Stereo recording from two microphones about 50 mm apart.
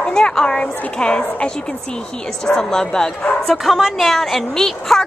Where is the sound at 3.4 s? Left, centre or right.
Centre.